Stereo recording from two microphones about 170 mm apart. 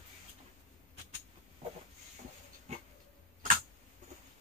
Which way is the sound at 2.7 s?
40° right (ahead or behind).